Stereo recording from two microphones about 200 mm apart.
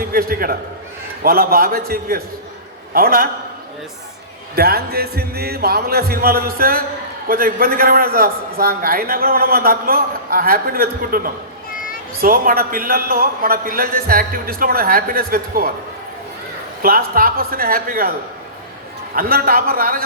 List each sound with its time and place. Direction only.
0.0 s a man's voice: 50° right (ahead or behind)
4.5 s a man's voice: 50° right (ahead or behind)
16.8 s a man's voice: 45° right (ahead or behind)
19.1 s a man's voice: 45° right (ahead or behind)